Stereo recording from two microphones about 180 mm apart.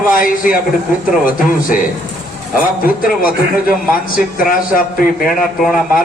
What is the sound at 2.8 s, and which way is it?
A man's voice, 50° left (ahead or behind).